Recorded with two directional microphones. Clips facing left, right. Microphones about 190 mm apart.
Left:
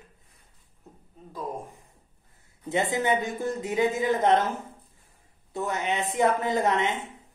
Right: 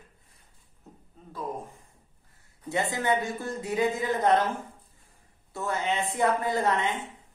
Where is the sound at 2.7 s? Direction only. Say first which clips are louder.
Left 2 dB; 20° left (ahead or behind).